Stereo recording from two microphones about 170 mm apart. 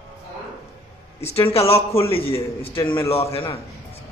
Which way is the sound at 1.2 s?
35° left (ahead or behind).